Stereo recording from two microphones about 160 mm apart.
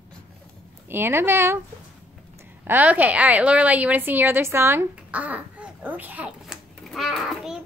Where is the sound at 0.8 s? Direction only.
15° right (ahead or behind).